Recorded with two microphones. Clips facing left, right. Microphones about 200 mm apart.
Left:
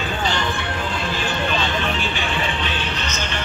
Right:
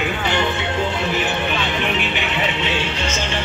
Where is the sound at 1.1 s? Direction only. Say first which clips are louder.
Right 2 dB; 20° right (ahead or behind).